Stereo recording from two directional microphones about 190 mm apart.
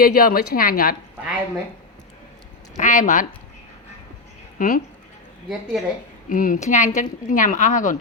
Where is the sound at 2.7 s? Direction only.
40° left (ahead or behind).